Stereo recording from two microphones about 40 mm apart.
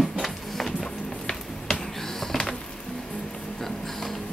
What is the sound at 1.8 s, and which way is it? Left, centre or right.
Music, centre.